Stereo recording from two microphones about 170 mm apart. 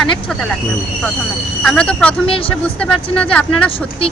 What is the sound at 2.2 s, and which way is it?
Speech, 35° left (ahead or behind).